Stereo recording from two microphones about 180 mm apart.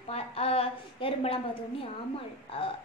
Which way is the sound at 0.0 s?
35° left (ahead or behind).